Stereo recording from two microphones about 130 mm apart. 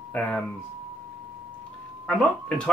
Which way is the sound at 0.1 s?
10° left (ahead or behind).